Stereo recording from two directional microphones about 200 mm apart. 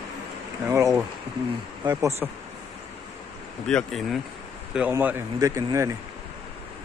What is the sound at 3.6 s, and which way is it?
A man's voice, centre (ahead or behind).